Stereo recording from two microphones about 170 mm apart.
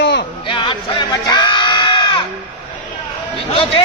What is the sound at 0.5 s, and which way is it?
Sheep, 30° left (ahead or behind).